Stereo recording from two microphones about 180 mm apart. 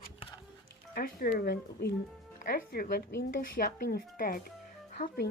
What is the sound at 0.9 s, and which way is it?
Speech, 55° left (ahead or behind).